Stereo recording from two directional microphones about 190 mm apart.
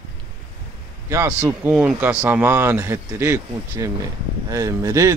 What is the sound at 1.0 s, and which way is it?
Speech, 15° right (ahead or behind).